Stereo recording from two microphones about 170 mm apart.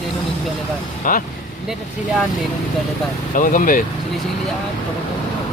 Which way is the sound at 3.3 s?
50° left (ahead or behind).